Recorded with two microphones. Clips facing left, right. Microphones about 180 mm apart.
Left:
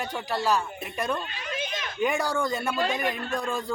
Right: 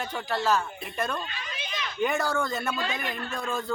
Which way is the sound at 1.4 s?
50° left (ahead or behind).